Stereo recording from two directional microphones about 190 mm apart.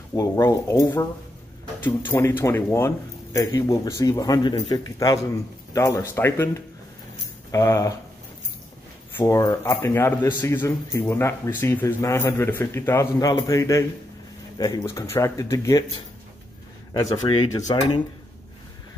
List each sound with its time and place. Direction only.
0.1 s a man's voice: 15° left (ahead or behind)
7.5 s a man's voice: 15° left (ahead or behind)
9.1 s a man's voice: 15° left (ahead or behind)
16.9 s speech: 20° left (ahead or behind)